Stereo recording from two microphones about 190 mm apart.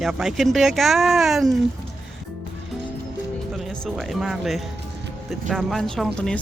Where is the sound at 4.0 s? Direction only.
Centre (ahead or behind).